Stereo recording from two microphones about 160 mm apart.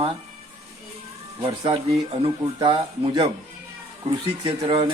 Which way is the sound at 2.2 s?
30° right (ahead or behind).